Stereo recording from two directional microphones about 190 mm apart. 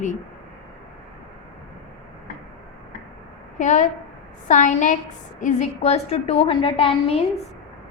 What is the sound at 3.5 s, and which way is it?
A woman's voice, 40° left (ahead or behind).